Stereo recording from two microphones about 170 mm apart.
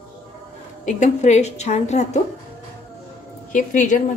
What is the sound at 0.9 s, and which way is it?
A woman's voice, 45° left (ahead or behind).